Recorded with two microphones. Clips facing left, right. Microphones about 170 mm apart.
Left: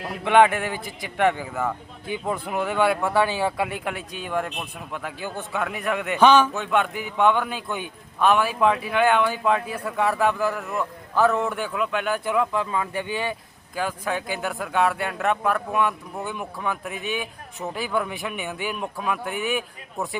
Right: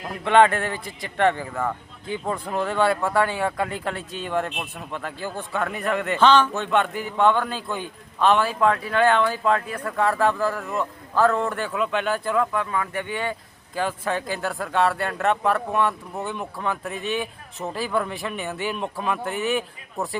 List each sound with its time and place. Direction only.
0.1 s a man's voice: 10° left (ahead or behind)
12.2 s a man's voice: 15° left (ahead or behind); by 20.1 s centre (ahead or behind)